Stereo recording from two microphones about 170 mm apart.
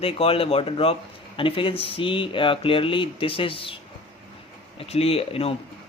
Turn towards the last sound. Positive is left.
turn(degrees=35)  # may be behind; listen again after turning